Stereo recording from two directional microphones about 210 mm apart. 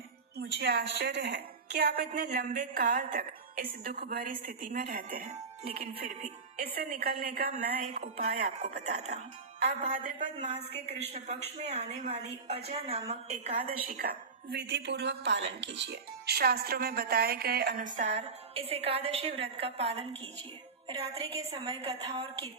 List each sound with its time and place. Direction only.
0.3 s speech: 50° right (ahead or behind)
8.1 s a woman's voice: 35° right (ahead or behind)
14.5 s speech: 55° right (ahead or behind)
17.9 s a woman's voice: 30° right (ahead or behind)
20.8 s music: 20° right (ahead or behind)
21.3 s a woman's voice: 30° right (ahead or behind)